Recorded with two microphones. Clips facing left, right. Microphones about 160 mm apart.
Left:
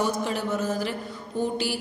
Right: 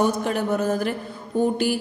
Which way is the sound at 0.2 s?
55° right (ahead or behind).